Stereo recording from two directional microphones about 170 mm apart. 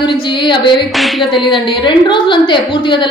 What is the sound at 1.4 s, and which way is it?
A woman's voice, 30° left (ahead or behind).